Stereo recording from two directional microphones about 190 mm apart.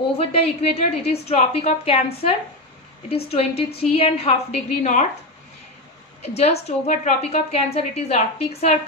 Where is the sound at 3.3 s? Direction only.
30° left (ahead or behind).